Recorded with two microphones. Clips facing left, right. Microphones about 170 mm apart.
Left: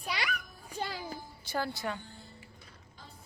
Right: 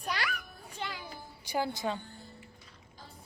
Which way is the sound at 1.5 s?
15° right (ahead or behind).